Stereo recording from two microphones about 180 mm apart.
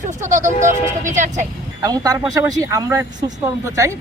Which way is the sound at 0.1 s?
45° right (ahead or behind).